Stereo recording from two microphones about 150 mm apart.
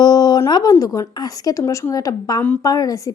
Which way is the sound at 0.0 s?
25° left (ahead or behind).